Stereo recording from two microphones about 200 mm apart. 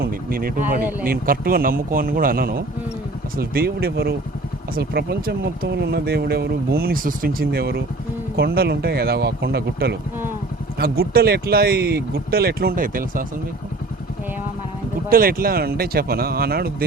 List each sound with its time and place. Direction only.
0.0 s a sound: 45° right (ahead or behind)
0.8 s speech: 10° right (ahead or behind)
1.0 s speech: 45° right (ahead or behind)
15.1 s speech: 45° right (ahead or behind)